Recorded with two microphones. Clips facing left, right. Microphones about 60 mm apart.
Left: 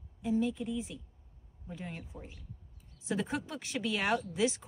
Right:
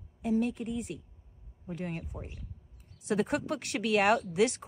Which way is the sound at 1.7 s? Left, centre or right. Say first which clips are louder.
Right 6 dB; right.